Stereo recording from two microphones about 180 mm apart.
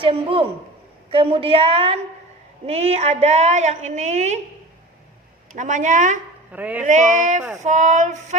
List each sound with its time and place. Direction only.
0.0 s a man's voice: 30° right (ahead or behind)
5.5 s speech: 45° right (ahead or behind)
6.5 s a man's voice: 10° right (ahead or behind)
6.8 s a woman's voice: 40° right (ahead or behind)